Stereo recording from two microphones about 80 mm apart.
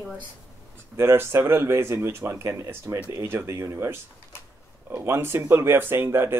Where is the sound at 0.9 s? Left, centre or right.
Right.